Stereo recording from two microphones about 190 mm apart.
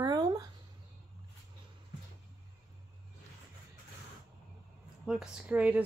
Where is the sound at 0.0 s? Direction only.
20° right (ahead or behind).